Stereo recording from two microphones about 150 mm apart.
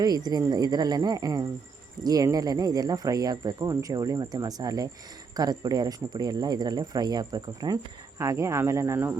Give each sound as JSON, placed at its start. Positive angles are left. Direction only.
{"t": 0.0, "sound": "speech", "side_deg": -25}